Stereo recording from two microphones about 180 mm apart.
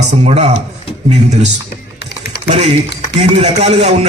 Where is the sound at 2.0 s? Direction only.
65° left (ahead or behind).